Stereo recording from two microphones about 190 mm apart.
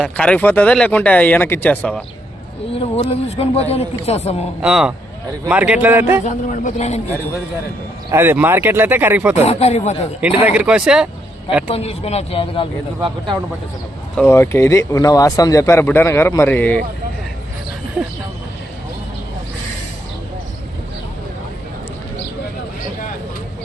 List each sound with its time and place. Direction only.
0.0 s speech: 5° left (ahead or behind)
2.9 s speech: 30° left (ahead or behind)
4.6 s speech: 5° right (ahead or behind)
6.2 s speech: 40° left (ahead or behind)
8.1 s speech: 10° right (ahead or behind)
9.3 s speech: 35° left (ahead or behind)
10.3 s speech: 5° right (ahead or behind)
11.7 s speech: 35° left (ahead or behind)
14.2 s speech: 10° left (ahead or behind)